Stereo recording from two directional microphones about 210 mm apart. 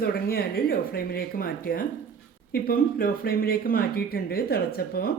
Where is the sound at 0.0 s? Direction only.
45° left (ahead or behind).